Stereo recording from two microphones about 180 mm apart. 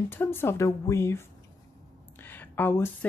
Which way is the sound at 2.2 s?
10° left (ahead or behind).